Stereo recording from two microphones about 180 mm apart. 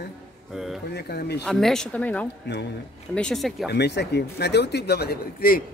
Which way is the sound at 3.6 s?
65° left (ahead or behind).